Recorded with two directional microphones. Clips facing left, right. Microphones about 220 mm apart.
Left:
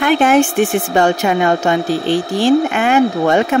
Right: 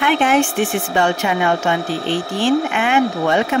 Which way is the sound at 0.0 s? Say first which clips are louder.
Left 4 dB; 45° left (ahead or behind).